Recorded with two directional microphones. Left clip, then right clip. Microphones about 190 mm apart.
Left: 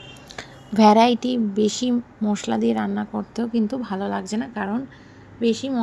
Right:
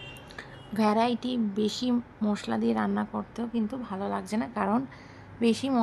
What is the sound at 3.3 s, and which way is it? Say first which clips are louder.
A woman's voice: left 11 dB; 20° left (ahead or behind).